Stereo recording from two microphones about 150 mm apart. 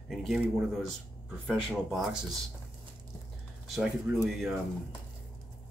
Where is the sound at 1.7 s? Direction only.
Centre (ahead or behind).